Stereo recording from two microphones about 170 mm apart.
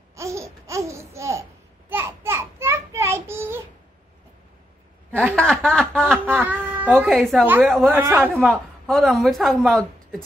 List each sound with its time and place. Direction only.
0.1 s babbling: 15° right (ahead or behind)
1.9 s a sound: 10° right (ahead or behind)
5.1 s speech: centre (ahead or behind)
6.1 s a sound: 10° right (ahead or behind)
7.1 s speech: centre (ahead or behind)
7.8 s speech: 15° right (ahead or behind)
8.3 s a woman's voice: 5° left (ahead or behind)